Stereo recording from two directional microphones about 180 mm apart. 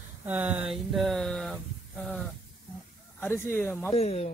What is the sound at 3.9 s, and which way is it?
Speech, 35° left (ahead or behind).